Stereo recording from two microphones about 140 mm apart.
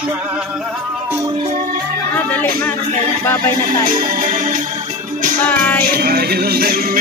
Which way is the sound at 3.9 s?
80° right.